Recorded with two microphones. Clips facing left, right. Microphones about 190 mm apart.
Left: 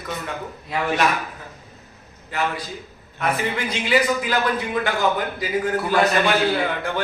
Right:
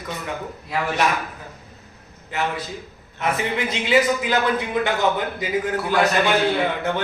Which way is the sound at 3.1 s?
25° right (ahead or behind).